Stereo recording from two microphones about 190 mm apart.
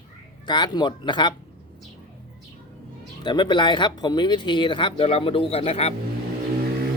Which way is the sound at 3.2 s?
25° left (ahead or behind).